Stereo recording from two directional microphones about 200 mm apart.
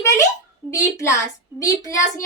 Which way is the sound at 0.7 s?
15° left (ahead or behind).